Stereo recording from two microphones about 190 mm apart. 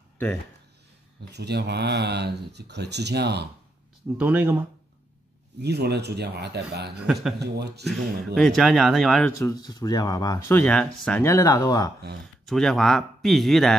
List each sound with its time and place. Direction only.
1.3 s speech: 60° right (ahead or behind)
4.2 s speech: 10° right (ahead or behind)
5.6 s speech: 60° right (ahead or behind)
8.4 s speech: centre (ahead or behind)
9.4 s speech: 20° left (ahead or behind)
10.6 s speech: 5° left (ahead or behind)
12.4 s speech: centre (ahead or behind)